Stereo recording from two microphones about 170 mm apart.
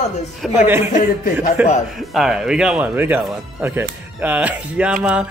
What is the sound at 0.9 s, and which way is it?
Speech, 50° left (ahead or behind).